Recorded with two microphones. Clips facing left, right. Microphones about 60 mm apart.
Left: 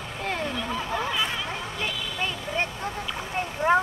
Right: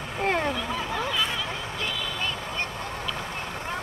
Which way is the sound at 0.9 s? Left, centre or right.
Centre.